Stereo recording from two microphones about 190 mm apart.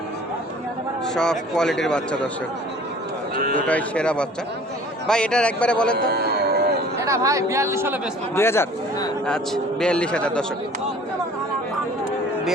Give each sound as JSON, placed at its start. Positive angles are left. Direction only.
{"t": 1.0, "sound": "a man's voice", "side_deg": 5}
{"t": 3.3, "sound": "a man's voice", "side_deg": -50}
{"t": 3.7, "sound": "a man's voice", "side_deg": 5}
{"t": 6.1, "sound": "a sound", "side_deg": -55}
{"t": 7.0, "sound": "speech", "side_deg": -15}
{"t": 8.4, "sound": "a man's voice", "side_deg": 15}